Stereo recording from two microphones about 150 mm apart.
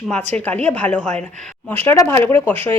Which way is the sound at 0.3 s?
10° left (ahead or behind).